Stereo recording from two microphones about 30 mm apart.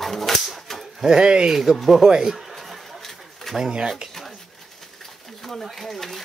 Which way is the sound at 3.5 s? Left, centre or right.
Centre.